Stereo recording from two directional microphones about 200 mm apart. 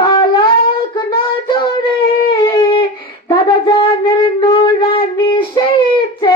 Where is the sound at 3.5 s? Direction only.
25° left (ahead or behind).